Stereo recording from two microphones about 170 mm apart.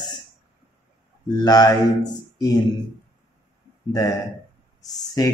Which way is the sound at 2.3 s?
20° left (ahead or behind).